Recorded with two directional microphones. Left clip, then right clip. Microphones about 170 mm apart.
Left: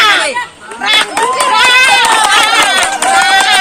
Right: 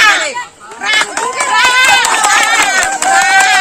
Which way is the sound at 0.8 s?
15° right (ahead or behind).